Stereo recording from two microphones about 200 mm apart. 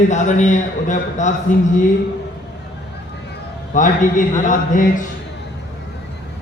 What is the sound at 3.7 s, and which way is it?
A man's voice, 40° left (ahead or behind).